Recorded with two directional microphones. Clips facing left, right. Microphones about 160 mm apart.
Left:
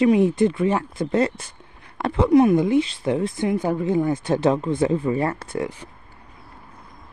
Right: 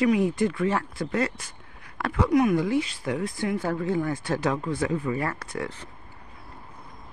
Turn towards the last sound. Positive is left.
turn(degrees=10)  # may be behind; listen again after turning